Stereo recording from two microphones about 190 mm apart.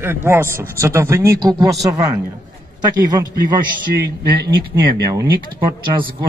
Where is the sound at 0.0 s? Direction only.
10° right (ahead or behind).